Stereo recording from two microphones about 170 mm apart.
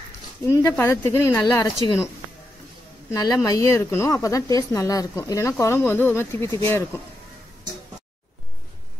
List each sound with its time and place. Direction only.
0.5 s speech: 15° left (ahead or behind)
3.1 s speech: 20° left (ahead or behind)